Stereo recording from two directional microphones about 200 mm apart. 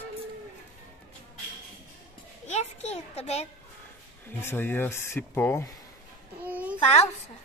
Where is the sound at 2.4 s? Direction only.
35° left (ahead or behind).